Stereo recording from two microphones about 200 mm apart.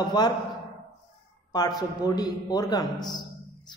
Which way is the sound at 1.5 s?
20° left (ahead or behind).